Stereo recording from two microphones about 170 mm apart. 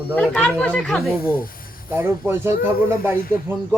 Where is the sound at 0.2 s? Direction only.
10° left (ahead or behind).